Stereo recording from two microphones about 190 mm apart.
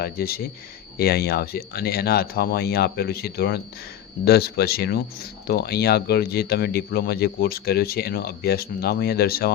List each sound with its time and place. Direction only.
0.0 s speech: 55° left (ahead or behind)